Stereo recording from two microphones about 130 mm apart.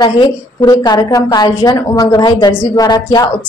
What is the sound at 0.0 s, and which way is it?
A woman's voice, 35° left (ahead or behind).